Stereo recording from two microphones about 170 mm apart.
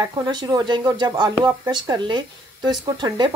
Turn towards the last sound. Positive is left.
turn(degrees=-25)  # may be behind; listen again after turning